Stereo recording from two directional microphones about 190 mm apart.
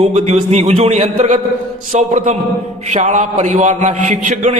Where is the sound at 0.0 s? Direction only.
35° right (ahead or behind).